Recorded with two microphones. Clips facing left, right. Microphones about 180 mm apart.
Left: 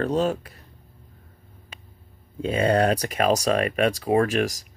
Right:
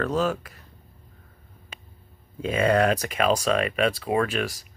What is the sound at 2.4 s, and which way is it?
Speech, 35° left (ahead or behind).